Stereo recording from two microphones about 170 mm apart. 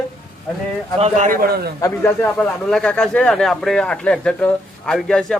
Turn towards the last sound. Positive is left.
turn(degrees=0)  # may be behind; listen again after turning